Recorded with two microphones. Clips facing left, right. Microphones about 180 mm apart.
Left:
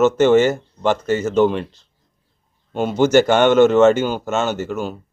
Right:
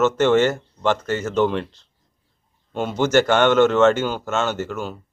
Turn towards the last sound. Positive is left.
turn(degrees=10)  # may be behind; listen again after turning